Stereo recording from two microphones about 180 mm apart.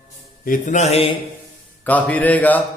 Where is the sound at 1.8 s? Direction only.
10° left (ahead or behind).